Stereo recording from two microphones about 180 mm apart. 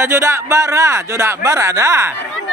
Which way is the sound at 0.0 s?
15° right (ahead or behind).